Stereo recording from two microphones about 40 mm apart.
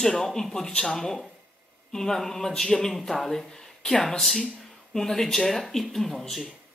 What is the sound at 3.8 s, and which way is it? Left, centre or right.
Speech, left.